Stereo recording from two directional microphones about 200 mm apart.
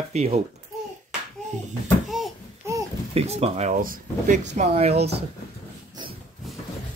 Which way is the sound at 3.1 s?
30° right (ahead or behind).